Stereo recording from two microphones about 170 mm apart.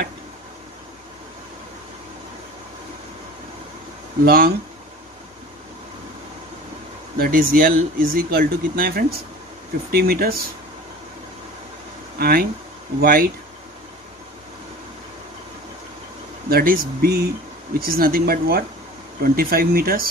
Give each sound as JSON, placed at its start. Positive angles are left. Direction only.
{"t": 4.2, "sound": "speech", "side_deg": -60}
{"t": 7.2, "sound": "speech", "side_deg": -60}
{"t": 12.2, "sound": "speech", "side_deg": -60}
{"t": 16.4, "sound": "speech", "side_deg": -60}